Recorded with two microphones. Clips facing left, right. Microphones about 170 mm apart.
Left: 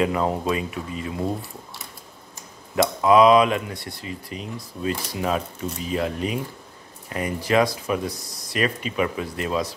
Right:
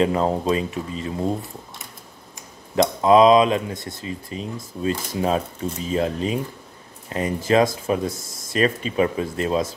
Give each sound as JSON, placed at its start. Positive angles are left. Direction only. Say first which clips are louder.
{"t": 0.0, "sound": "speech", "louder": "right 2 dB", "side_deg": -30}
{"t": 3.0, "sound": "speech", "louder": "right 1 dB", "side_deg": -25}